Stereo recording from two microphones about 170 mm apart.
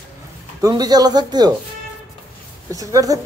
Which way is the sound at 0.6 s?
25° right (ahead or behind).